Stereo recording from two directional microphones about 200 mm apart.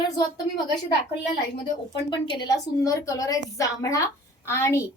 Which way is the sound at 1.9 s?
25° left (ahead or behind).